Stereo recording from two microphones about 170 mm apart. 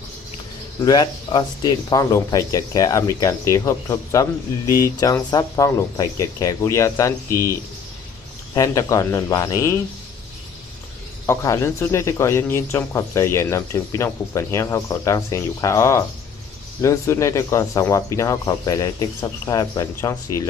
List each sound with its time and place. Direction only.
0.7 s speech: 25° left (ahead or behind)
8.5 s speech: 20° left (ahead or behind)
11.2 s speech: 15° left (ahead or behind)